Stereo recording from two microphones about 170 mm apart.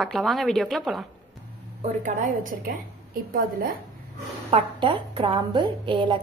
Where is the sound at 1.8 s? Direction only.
50° right (ahead or behind).